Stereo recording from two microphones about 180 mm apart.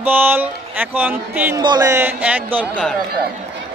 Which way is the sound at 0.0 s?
10° right (ahead or behind).